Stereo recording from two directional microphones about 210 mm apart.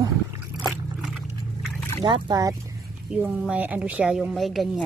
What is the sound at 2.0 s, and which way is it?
Speech, 20° right (ahead or behind).